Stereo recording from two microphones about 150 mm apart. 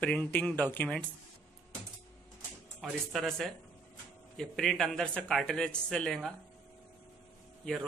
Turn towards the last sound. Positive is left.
turn(degrees=0)  # may be behind; listen again after turning